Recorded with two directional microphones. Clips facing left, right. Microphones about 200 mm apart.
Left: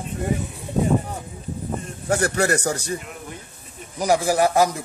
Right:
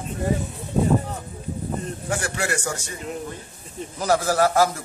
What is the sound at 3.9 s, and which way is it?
Speech, 15° left (ahead or behind).